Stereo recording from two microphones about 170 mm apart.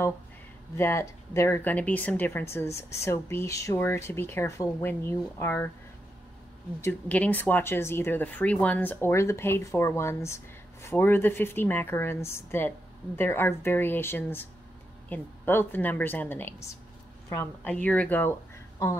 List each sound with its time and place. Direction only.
0.7 s speech: 15° left (ahead or behind)
6.8 s speech: 10° left (ahead or behind)